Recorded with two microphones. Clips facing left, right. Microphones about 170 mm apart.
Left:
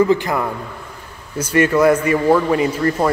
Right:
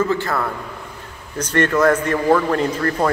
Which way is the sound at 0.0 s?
15° left (ahead or behind).